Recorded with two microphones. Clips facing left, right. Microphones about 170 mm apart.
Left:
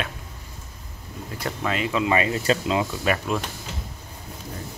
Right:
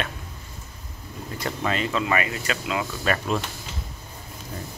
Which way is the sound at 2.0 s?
25° left (ahead or behind).